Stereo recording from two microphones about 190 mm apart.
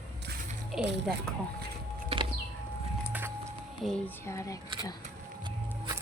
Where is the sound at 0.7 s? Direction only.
Centre (ahead or behind).